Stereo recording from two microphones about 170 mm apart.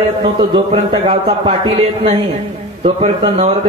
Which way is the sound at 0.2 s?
30° right (ahead or behind).